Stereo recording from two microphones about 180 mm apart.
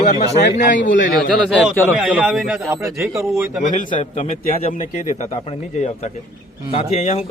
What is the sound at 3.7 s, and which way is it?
A man's voice, 45° left (ahead or behind).